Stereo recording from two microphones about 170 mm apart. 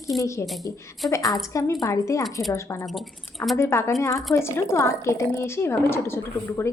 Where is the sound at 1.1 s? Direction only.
20° left (ahead or behind).